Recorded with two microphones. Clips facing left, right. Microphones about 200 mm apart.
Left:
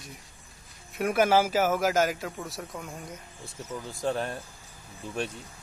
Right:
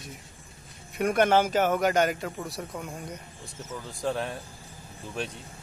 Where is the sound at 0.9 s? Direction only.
5° left (ahead or behind).